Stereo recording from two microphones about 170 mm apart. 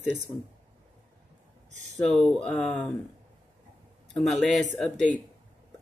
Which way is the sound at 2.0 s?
5° left (ahead or behind).